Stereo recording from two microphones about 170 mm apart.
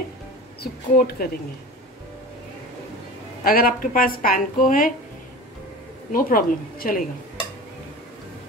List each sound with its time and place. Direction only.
0.6 s a woman's voice: 60° left (ahead or behind)
3.4 s a woman's voice: 60° left (ahead or behind)
6.1 s a woman's voice: 55° left (ahead or behind)